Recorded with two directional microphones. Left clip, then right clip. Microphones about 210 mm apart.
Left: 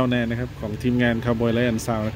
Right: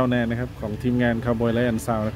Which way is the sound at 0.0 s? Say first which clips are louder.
Even; centre (ahead or behind).